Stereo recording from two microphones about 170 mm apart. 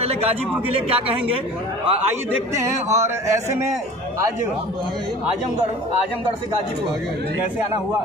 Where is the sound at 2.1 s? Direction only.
15° right (ahead or behind).